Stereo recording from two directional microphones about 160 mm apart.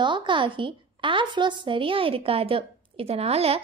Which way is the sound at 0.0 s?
30° right (ahead or behind).